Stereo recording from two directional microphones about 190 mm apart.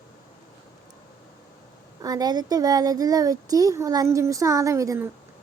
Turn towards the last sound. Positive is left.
turn(degrees=-15)  # may be behind; listen again after turning